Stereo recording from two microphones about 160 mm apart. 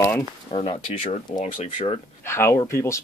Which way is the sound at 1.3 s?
50° left (ahead or behind).